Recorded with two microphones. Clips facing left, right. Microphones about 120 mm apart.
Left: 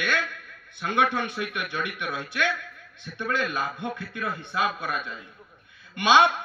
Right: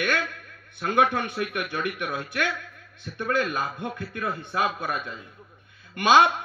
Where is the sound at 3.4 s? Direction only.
25° right (ahead or behind).